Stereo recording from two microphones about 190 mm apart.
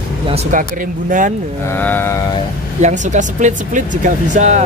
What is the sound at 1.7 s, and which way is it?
Speech, 10° left (ahead or behind).